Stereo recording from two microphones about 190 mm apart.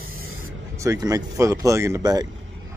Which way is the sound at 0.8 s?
20° right (ahead or behind).